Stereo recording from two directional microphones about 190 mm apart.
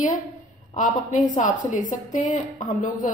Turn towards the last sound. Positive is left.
turn(degrees=45)  # may be behind; listen again after turning